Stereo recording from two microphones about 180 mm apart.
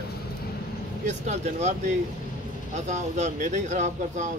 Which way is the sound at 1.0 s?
40° right (ahead or behind).